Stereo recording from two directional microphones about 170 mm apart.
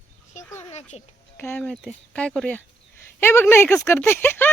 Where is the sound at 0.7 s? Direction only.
40° left (ahead or behind).